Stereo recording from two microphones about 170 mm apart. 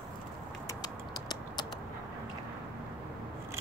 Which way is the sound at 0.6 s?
25° left (ahead or behind).